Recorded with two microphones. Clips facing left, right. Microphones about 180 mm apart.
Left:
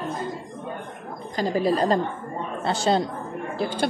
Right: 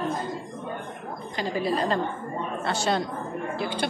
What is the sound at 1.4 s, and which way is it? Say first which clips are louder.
A woman's voice: left 4 dB; 40° left (ahead or behind).